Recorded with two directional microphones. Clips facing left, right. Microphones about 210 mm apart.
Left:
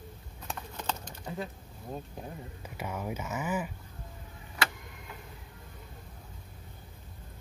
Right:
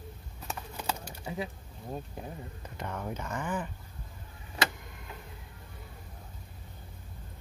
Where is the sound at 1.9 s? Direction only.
5° right (ahead or behind).